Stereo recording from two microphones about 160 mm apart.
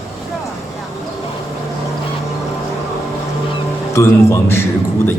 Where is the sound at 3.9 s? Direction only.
15° left (ahead or behind).